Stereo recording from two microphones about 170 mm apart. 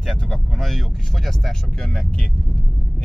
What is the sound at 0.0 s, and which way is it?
Vehicle, centre (ahead or behind).